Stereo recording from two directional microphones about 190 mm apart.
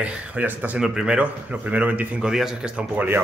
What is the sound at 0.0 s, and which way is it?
Speech, 5° right (ahead or behind).